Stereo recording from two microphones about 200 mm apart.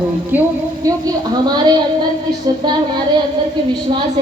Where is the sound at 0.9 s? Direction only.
20° right (ahead or behind).